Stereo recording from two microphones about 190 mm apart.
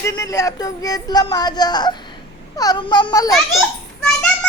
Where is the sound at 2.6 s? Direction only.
20° left (ahead or behind).